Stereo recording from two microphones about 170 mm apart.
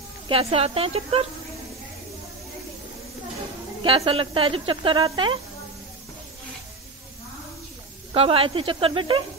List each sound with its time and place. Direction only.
0.3 s speech: 35° right (ahead or behind)
3.8 s speech: 35° right (ahead or behind)
8.1 s speech: 35° right (ahead or behind)